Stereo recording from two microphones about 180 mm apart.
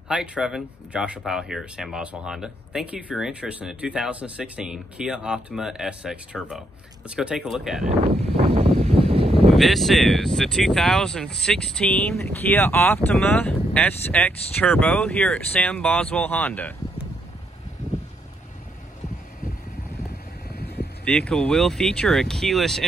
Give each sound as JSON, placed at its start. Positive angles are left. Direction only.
{"t": 0.1, "sound": "speech", "side_deg": -5}
{"t": 8.5, "sound": "a sound", "side_deg": -35}
{"t": 9.5, "sound": "speech", "side_deg": 0}
{"t": 20.4, "sound": "vehicle", "side_deg": 60}
{"t": 21.0, "sound": "speech", "side_deg": 5}